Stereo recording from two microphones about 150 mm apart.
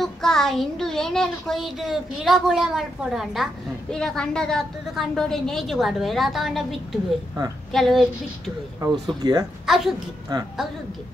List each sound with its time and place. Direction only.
0.0 s speech: centre (ahead or behind)
8.8 s speech: 25° right (ahead or behind)
9.7 s speech: centre (ahead or behind)
10.3 s speech: 30° right (ahead or behind)